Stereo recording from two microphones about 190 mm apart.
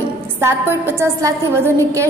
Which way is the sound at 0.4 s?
10° right (ahead or behind).